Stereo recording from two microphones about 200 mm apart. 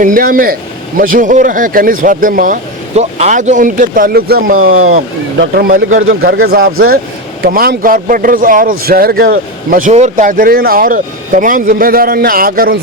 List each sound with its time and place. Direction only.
0.0 s speech: 45° right (ahead or behind)